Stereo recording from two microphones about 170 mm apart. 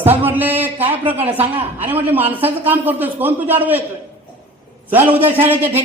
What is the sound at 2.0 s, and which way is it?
A man's voice, 10° right (ahead or behind).